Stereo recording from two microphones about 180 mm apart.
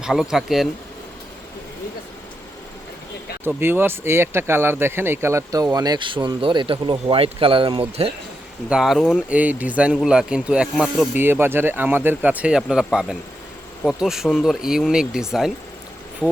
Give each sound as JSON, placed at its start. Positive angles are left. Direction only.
{"t": 0.0, "sound": "speech", "side_deg": -5}
{"t": 3.4, "sound": "speech", "side_deg": -10}
{"t": 8.7, "sound": "speech", "side_deg": 0}